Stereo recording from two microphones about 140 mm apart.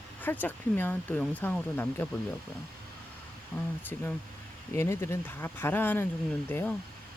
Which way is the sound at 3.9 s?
10° left (ahead or behind).